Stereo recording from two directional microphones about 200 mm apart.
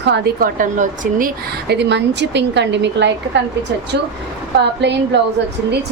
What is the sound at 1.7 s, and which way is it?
A woman's voice, 60° right (ahead or behind).